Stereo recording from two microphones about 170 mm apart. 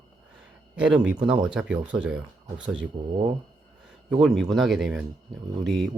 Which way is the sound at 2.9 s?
40° right (ahead or behind).